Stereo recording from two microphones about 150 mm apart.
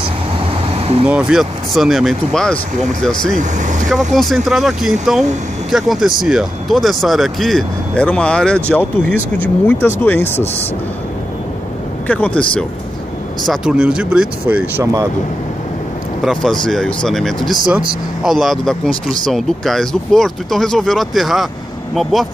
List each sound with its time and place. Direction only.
0.7 s vehicle: 40° right (ahead or behind)
1.0 s speech: 5° right (ahead or behind)
3.3 s speech: 55° right (ahead or behind)
3.9 s speech: centre (ahead or behind)
12.1 s speech: 10° left (ahead or behind)
13.4 s speech: 5° right (ahead or behind)
16.3 s speech: centre (ahead or behind)
17.6 s speech: 10° right (ahead or behind)